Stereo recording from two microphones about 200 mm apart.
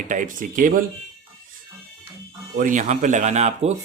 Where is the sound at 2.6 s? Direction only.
40° right (ahead or behind).